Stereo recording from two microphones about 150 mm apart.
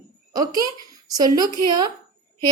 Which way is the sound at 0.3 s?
25° right (ahead or behind).